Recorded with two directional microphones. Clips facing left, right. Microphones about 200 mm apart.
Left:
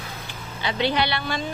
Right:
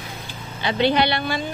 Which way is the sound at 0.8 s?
20° right (ahead or behind).